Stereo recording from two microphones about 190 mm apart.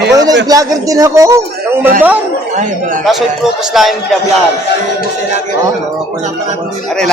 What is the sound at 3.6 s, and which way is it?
Speech, centre (ahead or behind).